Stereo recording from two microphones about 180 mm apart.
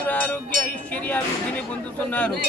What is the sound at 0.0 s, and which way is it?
Music, 10° left (ahead or behind).